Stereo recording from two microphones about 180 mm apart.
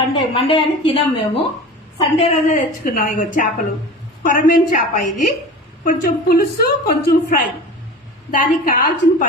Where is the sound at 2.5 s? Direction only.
50° left (ahead or behind).